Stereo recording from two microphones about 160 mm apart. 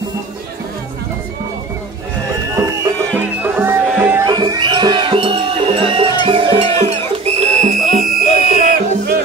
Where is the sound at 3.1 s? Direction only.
10° right (ahead or behind).